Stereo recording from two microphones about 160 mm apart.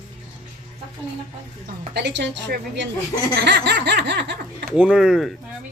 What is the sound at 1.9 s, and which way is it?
Laughter, 90° right.